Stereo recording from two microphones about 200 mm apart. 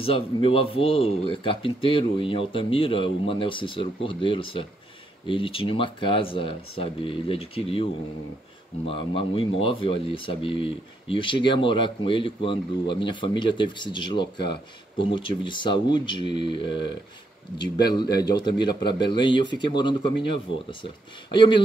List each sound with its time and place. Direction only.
0.0 s speech: 30° left (ahead or behind)
21.3 s speech: 25° left (ahead or behind)